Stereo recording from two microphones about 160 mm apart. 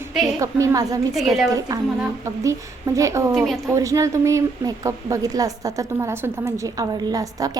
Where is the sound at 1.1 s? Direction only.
Centre (ahead or behind).